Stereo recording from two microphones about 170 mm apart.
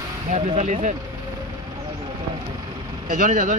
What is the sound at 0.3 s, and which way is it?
Speech, 45° right (ahead or behind).